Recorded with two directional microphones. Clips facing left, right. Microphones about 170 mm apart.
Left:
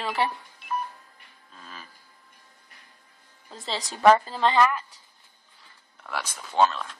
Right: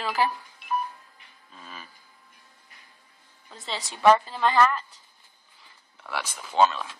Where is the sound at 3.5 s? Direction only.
35° left (ahead or behind).